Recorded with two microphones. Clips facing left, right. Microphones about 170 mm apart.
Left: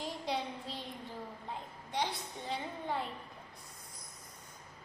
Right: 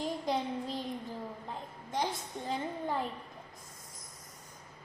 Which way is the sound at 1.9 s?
45° right (ahead or behind).